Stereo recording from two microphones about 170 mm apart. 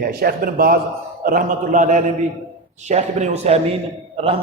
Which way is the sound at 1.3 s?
50° right (ahead or behind).